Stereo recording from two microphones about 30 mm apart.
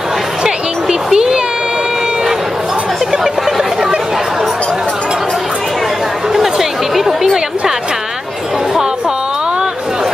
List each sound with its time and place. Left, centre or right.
0.4 s a sound: right
3.1 s chatter: centre
6.3 s chatter: centre